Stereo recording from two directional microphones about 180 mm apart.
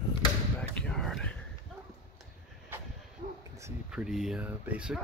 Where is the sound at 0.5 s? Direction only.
5° left (ahead or behind).